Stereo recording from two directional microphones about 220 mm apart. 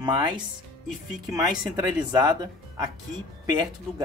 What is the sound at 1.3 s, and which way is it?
Speech, 15° right (ahead or behind).